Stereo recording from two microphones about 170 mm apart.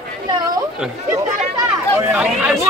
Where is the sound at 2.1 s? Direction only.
5° right (ahead or behind).